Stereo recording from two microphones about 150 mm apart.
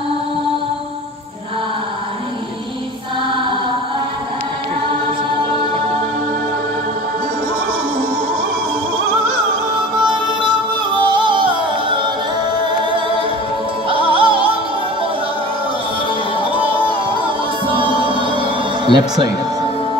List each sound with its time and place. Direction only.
3.3 s choir: 35° right (ahead or behind)
9.8 s music: 30° right (ahead or behind)
12.5 s a capella: 30° right (ahead or behind)
13.8 s music: 35° right (ahead or behind)
17.2 s music: 35° right (ahead or behind)